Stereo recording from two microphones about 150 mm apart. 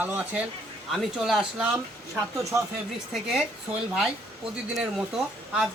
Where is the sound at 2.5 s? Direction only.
15° right (ahead or behind).